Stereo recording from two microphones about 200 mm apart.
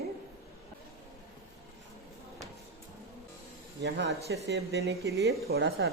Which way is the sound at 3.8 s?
55° right (ahead or behind).